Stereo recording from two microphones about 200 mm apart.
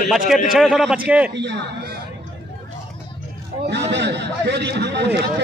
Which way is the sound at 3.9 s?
60° right (ahead or behind).